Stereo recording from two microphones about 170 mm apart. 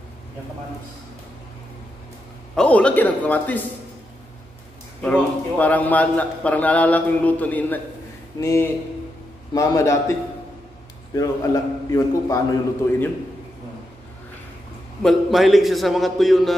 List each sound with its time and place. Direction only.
2.5 s a man's voice: 5° left (ahead or behind)
5.0 s a man's voice: 10° left (ahead or behind)
11.1 s a man's voice: 20° left (ahead or behind)
15.0 s a man's voice: centre (ahead or behind)